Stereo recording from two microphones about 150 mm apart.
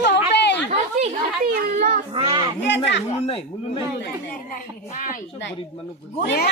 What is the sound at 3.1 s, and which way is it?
Speech, 40° left (ahead or behind).